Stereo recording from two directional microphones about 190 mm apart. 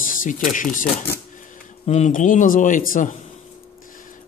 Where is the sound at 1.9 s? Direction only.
35° left (ahead or behind).